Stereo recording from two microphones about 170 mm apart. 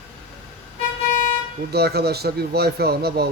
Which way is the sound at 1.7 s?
70° right (ahead or behind).